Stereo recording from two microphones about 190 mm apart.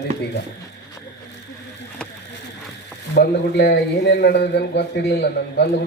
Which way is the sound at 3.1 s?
60° left (ahead or behind).